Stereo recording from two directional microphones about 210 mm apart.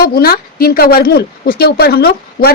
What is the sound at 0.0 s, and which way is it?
A woman's voice, 45° left (ahead or behind).